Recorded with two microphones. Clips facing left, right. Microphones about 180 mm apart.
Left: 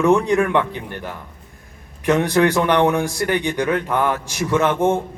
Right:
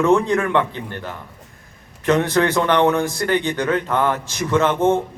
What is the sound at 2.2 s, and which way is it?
Speech, 15° left (ahead or behind).